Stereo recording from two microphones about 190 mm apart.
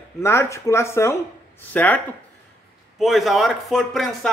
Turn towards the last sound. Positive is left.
turn(degrees=0)  # may be behind; listen again after turning